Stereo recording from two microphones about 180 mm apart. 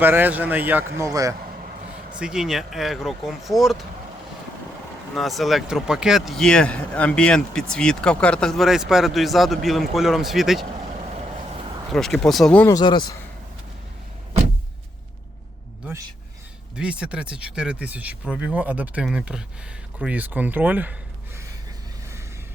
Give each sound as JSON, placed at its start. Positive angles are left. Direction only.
{"t": 0.0, "sound": "speech", "side_deg": -10}
{"t": 2.1, "sound": "a man's voice", "side_deg": -5}
{"t": 5.1, "sound": "a man's voice", "side_deg": 0}
{"t": 11.9, "sound": "a man's voice", "side_deg": 0}
{"t": 12.7, "sound": "speech", "side_deg": 25}
{"t": 16.7, "sound": "speech", "side_deg": -5}